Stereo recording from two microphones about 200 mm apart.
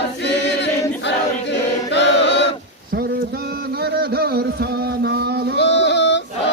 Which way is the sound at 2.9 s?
50° right (ahead or behind).